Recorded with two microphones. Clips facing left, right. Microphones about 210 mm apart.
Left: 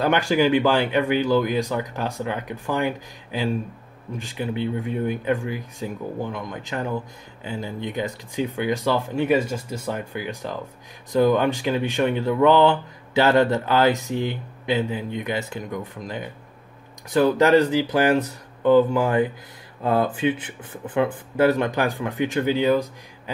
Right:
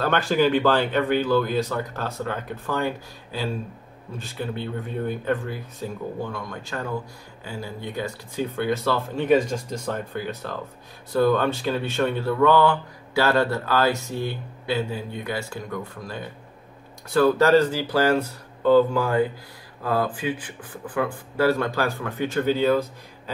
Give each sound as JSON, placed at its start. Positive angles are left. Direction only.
{"t": 0.0, "sound": "speech", "side_deg": 15}